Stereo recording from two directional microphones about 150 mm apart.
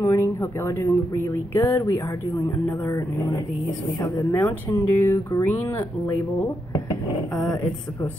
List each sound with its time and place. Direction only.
0.0 s speech: 20° left (ahead or behind)